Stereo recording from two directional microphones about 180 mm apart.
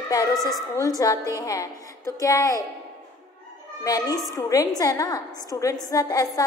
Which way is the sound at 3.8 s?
20° left (ahead or behind).